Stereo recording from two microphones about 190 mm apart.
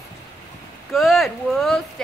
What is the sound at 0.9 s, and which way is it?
Female singing, centre (ahead or behind).